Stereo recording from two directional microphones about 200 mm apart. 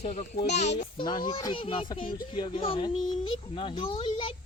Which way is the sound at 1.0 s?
20° left (ahead or behind).